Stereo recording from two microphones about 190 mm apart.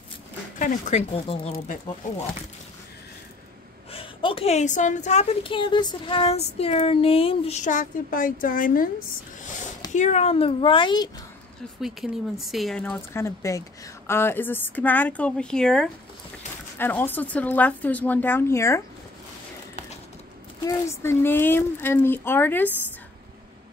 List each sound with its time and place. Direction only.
0.6 s a woman's voice: 40° left (ahead or behind)
3.9 s a woman's voice: 30° left (ahead or behind); by 8.9 s 45° left (ahead or behind)
9.9 s speech: 35° left (ahead or behind)
11.8 s speech: centre (ahead or behind); by 18.8 s 15° left (ahead or behind)
20.6 s speech: 15° left (ahead or behind)